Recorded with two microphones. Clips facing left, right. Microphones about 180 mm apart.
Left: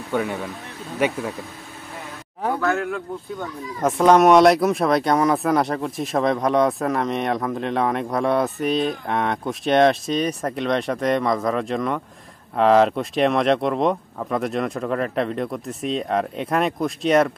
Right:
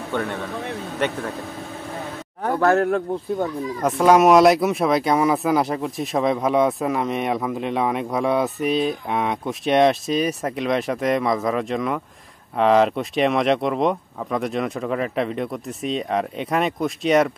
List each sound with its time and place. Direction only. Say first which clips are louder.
0.1 s speech: left 2 dB; 5° left (ahead or behind)
2.6 s a man's voice: right 10 dB; 40° right (ahead or behind)
3.8 s speech: left 1 dB; centre (ahead or behind)